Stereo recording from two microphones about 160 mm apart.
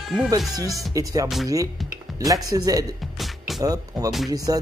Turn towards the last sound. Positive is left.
turn(degrees=-20)  # may be behind; listen again after turning